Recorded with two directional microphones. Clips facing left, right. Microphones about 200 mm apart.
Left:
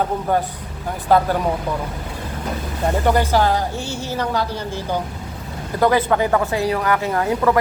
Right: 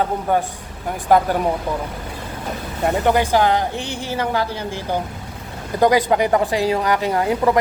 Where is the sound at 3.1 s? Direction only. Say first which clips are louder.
Right 1 dB; 15° right (ahead or behind).